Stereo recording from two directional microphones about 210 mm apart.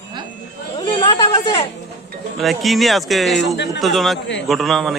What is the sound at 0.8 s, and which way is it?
Chatter, 20° left (ahead or behind).